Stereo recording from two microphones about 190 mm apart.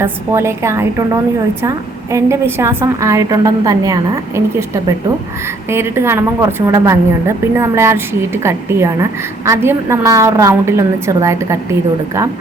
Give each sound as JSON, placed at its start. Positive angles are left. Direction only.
{"t": 0.0, "sound": "a woman's voice", "side_deg": -15}